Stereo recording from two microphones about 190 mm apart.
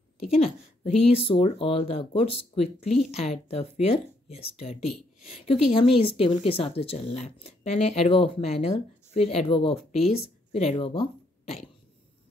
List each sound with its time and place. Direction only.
0.2 s speech: 35° left (ahead or behind)